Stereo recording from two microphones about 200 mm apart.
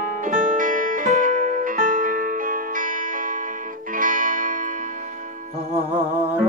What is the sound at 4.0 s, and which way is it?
Music, 45° right (ahead or behind).